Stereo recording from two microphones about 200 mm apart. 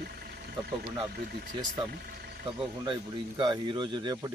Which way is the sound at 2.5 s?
25° right (ahead or behind).